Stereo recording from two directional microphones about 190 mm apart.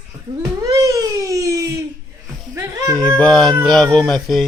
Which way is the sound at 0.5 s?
15° right (ahead or behind).